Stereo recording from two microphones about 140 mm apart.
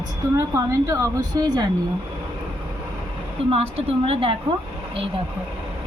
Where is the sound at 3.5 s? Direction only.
45° right (ahead or behind).